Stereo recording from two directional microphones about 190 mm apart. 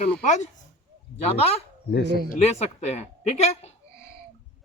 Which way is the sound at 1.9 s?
60° left (ahead or behind).